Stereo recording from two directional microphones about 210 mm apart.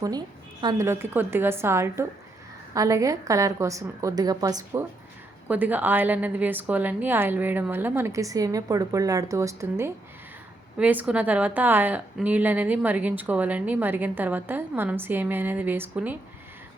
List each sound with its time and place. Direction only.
0.6 s a woman's voice: 15° right (ahead or behind)